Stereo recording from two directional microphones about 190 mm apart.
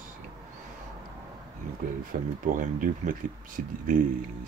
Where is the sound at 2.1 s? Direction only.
45° right (ahead or behind).